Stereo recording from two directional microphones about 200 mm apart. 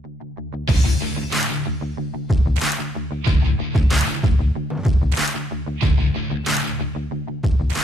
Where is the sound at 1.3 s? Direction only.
Centre (ahead or behind).